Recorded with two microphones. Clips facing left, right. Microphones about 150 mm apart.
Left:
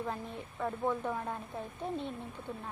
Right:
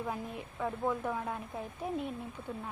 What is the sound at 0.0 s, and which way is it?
A woman's voice, 10° right (ahead or behind).